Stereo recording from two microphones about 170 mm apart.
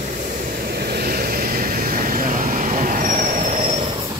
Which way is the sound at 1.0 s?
60° right (ahead or behind).